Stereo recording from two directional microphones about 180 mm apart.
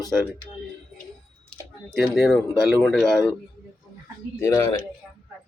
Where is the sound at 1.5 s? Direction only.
5° left (ahead or behind).